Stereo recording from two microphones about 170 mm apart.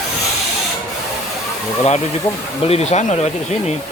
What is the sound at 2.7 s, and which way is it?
Speech, 40° left (ahead or behind).